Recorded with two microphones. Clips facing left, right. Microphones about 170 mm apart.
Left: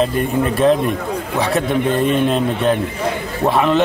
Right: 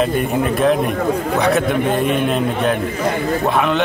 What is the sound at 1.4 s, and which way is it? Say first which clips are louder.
Speech: left 1 dB; centre (ahead or behind).